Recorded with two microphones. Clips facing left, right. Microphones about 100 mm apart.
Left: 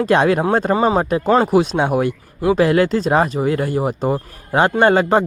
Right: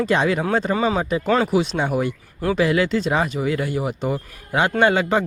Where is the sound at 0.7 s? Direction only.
40° left (ahead or behind); by 2.1 s 60° left (ahead or behind).